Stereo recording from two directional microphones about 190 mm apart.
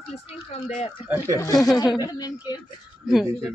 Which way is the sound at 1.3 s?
15° left (ahead or behind).